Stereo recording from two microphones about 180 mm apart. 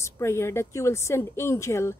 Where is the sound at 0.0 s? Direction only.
15° left (ahead or behind).